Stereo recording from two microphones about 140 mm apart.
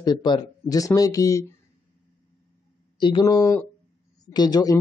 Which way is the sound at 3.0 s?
30° left (ahead or behind).